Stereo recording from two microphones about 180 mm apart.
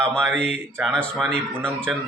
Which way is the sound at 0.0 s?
Centre (ahead or behind).